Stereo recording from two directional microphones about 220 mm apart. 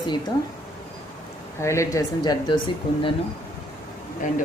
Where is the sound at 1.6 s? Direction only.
15° left (ahead or behind).